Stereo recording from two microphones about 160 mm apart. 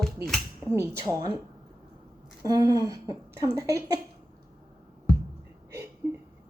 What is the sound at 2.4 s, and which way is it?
Speech, 20° right (ahead or behind).